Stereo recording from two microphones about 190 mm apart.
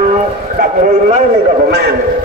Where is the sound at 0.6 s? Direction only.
40° right (ahead or behind).